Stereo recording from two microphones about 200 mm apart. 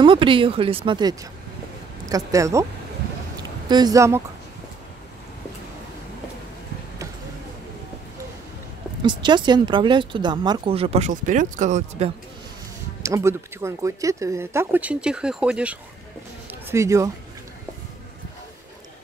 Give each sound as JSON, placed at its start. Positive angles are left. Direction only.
{"t": 0.0, "sound": "speech", "side_deg": -25}
{"t": 3.6, "sound": "speech", "side_deg": -20}
{"t": 9.0, "sound": "speech", "side_deg": -20}
{"t": 13.0, "sound": "speech", "side_deg": -15}